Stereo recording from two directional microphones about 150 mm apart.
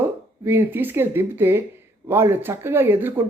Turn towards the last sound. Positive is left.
turn(degrees=-15)  # may be behind; listen again after turning